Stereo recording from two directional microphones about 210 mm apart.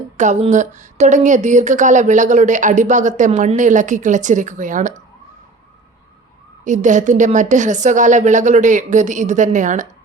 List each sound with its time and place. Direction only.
0.2 s speech: 30° right (ahead or behind)
6.7 s speech: 35° right (ahead or behind)